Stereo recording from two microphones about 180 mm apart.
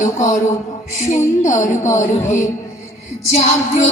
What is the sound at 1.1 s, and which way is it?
Music, 40° left (ahead or behind).